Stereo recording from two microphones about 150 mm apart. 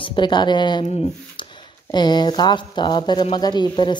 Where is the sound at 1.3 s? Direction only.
30° left (ahead or behind).